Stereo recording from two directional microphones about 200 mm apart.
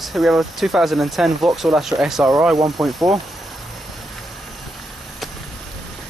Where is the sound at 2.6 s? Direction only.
20° right (ahead or behind).